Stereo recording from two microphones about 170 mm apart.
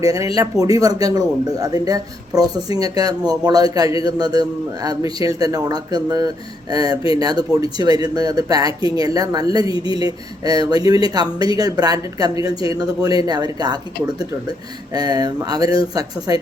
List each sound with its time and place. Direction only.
0.0 s speech: 20° right (ahead or behind)
14.9 s speech: 25° right (ahead or behind)